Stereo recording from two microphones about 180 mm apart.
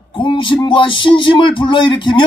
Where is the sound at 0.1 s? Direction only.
30° left (ahead or behind).